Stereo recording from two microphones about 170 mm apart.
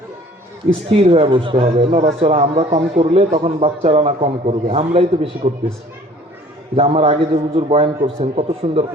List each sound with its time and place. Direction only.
0.9 s speech: 35° right (ahead or behind)
6.7 s speech: 35° right (ahead or behind)